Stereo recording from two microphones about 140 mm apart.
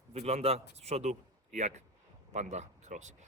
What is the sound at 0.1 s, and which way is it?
A man's voice, 50° right (ahead or behind).